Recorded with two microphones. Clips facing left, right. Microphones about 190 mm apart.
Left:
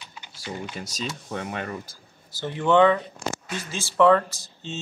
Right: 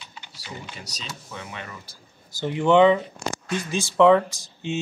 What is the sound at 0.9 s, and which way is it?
Speech, 55° left (ahead or behind).